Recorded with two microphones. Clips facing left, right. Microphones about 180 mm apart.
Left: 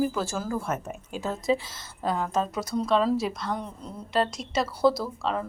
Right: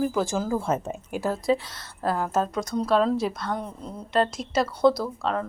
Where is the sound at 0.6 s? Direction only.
30° right (ahead or behind).